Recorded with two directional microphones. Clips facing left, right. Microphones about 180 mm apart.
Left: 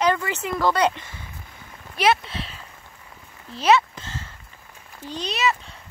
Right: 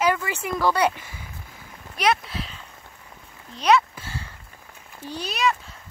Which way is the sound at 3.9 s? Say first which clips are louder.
Even; 10° right (ahead or behind).